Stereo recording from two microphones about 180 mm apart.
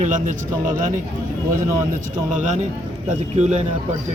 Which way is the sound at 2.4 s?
40° right (ahead or behind).